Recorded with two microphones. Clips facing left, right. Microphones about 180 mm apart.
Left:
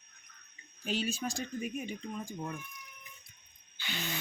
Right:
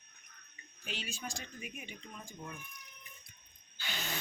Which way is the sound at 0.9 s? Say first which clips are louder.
Left 9 dB; 40° left (ahead or behind).